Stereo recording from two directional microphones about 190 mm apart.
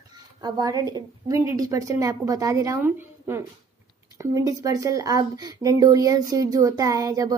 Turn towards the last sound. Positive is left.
turn(degrees=-15)  # may be behind; listen again after turning